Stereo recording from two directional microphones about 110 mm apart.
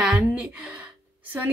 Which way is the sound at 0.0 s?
10° right (ahead or behind).